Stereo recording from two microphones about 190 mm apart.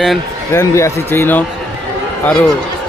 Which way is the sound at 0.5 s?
15° left (ahead or behind).